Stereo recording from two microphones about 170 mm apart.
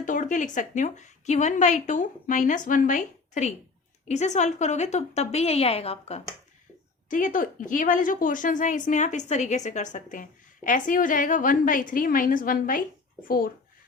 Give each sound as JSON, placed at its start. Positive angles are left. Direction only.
{"t": 0.0, "sound": "a woman's voice", "side_deg": 50}
{"t": 7.1, "sound": "a woman's voice", "side_deg": 50}